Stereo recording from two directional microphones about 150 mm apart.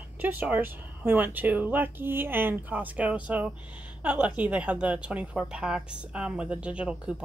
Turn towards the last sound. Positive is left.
turn(degrees=-5)  # may be behind; listen again after turning